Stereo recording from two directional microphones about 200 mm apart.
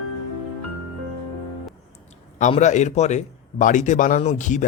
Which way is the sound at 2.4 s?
35° left (ahead or behind).